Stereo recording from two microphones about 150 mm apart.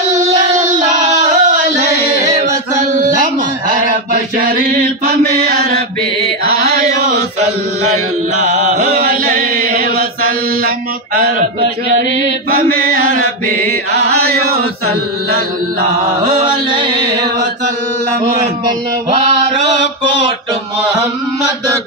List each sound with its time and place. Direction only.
0.4 s a sound: 55° right (ahead or behind)
4.1 s mantra: 70° right (ahead or behind); by 5.8 s 90° right
6.4 s chant: 90° right
8.4 s chant: 55° right (ahead or behind)
11.1 s mantra: 70° right (ahead or behind)
12.4 s mantra: 70° right (ahead or behind)
14.0 s chant: 90° right
16.4 s music: 35° right (ahead or behind)